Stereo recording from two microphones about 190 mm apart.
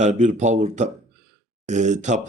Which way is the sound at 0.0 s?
40° right (ahead or behind).